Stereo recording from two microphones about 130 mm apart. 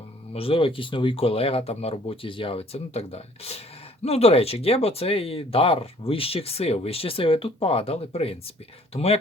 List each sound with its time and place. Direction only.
0.3 s speech: 45° left (ahead or behind)